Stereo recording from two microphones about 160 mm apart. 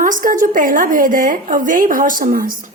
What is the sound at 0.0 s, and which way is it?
A woman's voice, 55° right (ahead or behind).